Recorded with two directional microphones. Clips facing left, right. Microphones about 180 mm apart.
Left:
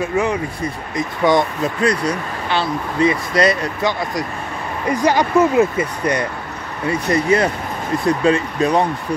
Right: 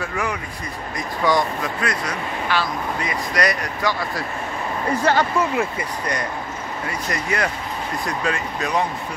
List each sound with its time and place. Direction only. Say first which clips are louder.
0.0 s speech: left 7 dB; 25° left (ahead or behind)